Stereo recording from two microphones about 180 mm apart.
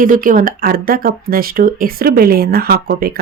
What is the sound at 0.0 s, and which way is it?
Speech, 50° right (ahead or behind).